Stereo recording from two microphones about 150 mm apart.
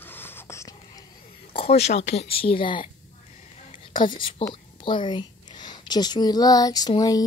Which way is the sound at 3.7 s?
35° left (ahead or behind).